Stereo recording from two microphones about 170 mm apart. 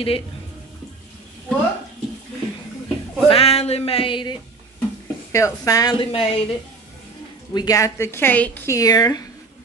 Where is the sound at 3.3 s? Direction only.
35° left (ahead or behind).